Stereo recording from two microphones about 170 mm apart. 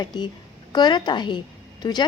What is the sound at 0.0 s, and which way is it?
A woman's voice, 25° left (ahead or behind).